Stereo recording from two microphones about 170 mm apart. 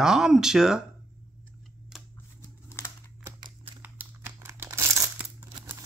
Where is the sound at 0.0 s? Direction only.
5° right (ahead or behind).